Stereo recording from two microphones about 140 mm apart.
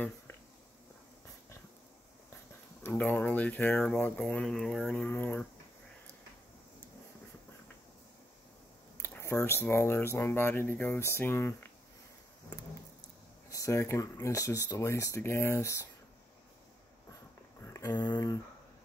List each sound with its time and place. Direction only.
2.8 s speech: 15° left (ahead or behind)
9.0 s speech: 20° left (ahead or behind)
13.5 s speech: 20° left (ahead or behind)
17.6 s a sound: 20° left (ahead or behind)
18.1 s speech: 25° left (ahead or behind)